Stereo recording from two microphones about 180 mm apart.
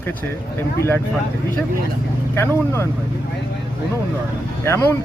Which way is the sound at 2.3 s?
15° left (ahead or behind).